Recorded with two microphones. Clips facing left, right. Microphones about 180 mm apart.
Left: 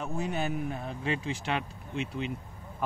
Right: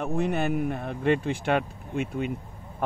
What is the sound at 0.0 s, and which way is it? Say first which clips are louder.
Speech: right 6 dB; 60° right (ahead or behind).